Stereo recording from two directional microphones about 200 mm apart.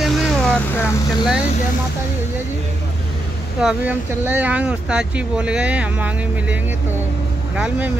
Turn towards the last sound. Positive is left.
turn(degrees=-10)  # may be behind; listen again after turning